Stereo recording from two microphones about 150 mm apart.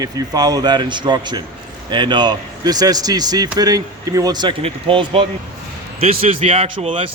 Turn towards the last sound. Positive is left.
turn(degrees=-35)  # may be behind; listen again after turning